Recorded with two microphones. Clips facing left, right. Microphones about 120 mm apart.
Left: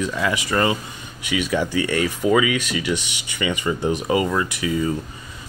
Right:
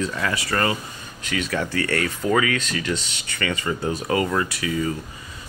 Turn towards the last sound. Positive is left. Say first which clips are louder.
# left 2 dB
turn(degrees=20)  # may be behind; listen again after turning